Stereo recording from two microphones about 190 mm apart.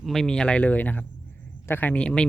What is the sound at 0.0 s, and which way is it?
Speech, centre (ahead or behind).